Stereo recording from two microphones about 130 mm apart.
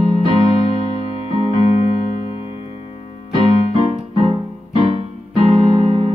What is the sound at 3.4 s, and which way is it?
Keyboard, 40° right (ahead or behind).